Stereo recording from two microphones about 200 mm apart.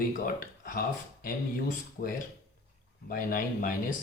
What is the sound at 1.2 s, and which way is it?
Speech, 45° left (ahead or behind).